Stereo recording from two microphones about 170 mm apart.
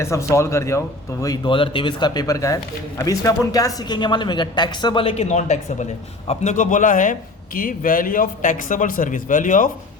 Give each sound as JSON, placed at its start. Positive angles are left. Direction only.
{"t": 0.0, "sound": "a man's voice", "side_deg": 15}